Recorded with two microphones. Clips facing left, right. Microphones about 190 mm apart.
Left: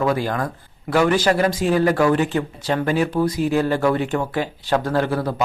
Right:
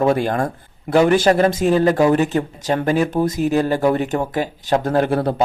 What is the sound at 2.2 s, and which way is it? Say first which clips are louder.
Speech: right 2 dB; 40° right (ahead or behind).